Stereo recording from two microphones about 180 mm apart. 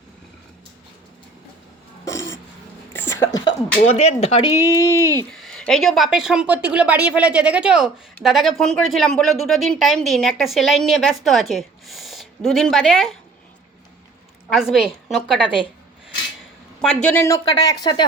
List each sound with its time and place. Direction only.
2.9 s a sound: 20° left (ahead or behind)
3.8 s speech: 35° left (ahead or behind)
4.4 s speech: 20° left (ahead or behind)
5.3 s speech: centre (ahead or behind)
14.5 s speech: centre (ahead or behind)
16.8 s speech: 5° left (ahead or behind); by 18.0 s 25° left (ahead or behind)